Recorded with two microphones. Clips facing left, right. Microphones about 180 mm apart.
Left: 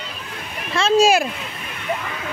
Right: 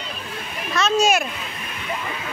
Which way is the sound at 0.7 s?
30° left (ahead or behind).